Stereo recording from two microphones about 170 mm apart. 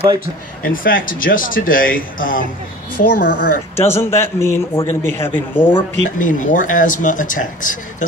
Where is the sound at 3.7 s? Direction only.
15° left (ahead or behind).